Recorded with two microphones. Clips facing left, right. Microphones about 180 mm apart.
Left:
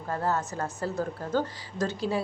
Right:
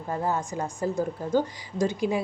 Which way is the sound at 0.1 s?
15° right (ahead or behind).